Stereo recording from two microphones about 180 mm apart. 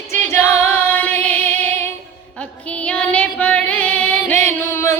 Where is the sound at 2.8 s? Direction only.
5° left (ahead or behind).